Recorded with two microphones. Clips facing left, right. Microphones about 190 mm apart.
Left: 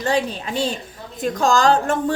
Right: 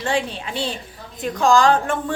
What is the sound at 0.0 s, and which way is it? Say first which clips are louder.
A woman's voice: left 2 dB; 40° left (ahead or behind).